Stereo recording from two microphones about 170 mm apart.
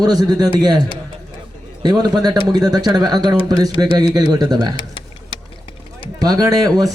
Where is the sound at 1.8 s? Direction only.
25° right (ahead or behind).